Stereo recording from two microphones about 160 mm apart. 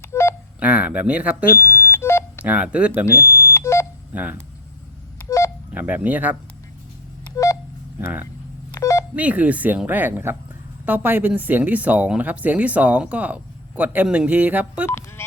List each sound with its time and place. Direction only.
0.0 s telephone dialing: 15° left (ahead or behind)
0.6 s speech: 10° right (ahead or behind)
1.5 s smoke detector: 15° left (ahead or behind)
2.4 s speech: 10° right (ahead or behind)
3.2 s smoke detector: 20° left (ahead or behind)
4.1 s speech: 10° right (ahead or behind)
5.7 s speech: 10° right (ahead or behind)
8.0 s speech: 10° right (ahead or behind)
8.7 s telephone dialing: 20° left (ahead or behind)
9.1 s speech: 10° right (ahead or behind)
14.8 s music: 15° left (ahead or behind)